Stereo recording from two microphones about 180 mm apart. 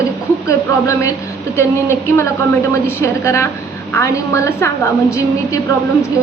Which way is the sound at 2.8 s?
15° left (ahead or behind).